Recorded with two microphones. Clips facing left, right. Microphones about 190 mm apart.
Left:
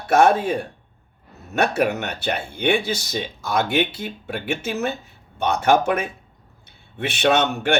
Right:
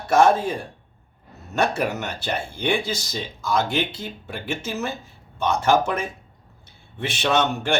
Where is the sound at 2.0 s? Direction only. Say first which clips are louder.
Left 2 dB; 60° left (ahead or behind).